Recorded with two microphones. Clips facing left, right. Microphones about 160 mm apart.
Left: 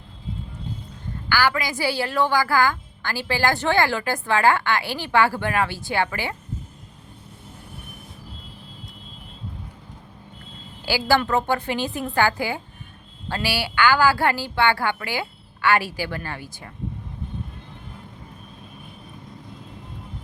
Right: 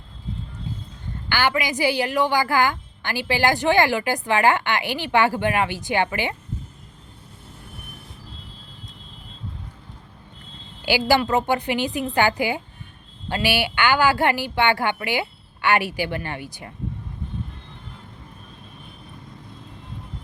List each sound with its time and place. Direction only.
1.3 s a woman's voice: 20° right (ahead or behind)
10.8 s a woman's voice: 15° right (ahead or behind)